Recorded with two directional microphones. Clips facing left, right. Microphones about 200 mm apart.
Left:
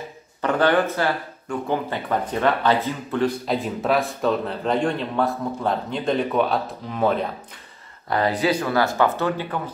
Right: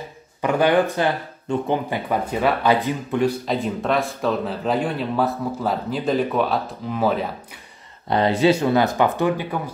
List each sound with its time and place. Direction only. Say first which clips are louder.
0.4 s speech: right 2 dB; 10° right (ahead or behind)
3.4 s speech: even; centre (ahead or behind)
8.1 s speech: right 4 dB; 25° right (ahead or behind)